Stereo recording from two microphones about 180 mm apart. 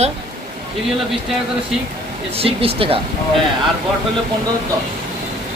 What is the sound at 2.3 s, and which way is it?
Speech, 30° right (ahead or behind).